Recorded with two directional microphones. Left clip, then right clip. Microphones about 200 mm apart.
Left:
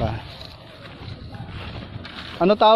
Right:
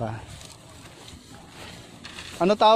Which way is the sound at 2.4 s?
35° right (ahead or behind).